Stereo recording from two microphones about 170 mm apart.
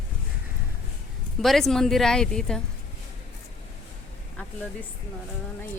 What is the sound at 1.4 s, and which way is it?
Speech, centre (ahead or behind).